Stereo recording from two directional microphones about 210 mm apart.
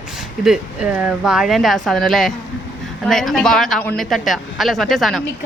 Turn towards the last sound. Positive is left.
turn(degrees=0)  # may be behind; listen again after turning